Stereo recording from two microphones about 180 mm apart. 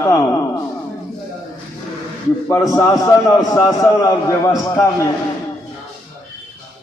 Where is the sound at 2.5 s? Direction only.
15° left (ahead or behind).